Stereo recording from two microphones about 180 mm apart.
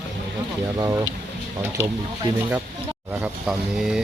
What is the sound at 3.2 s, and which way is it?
Speech, 5° right (ahead or behind).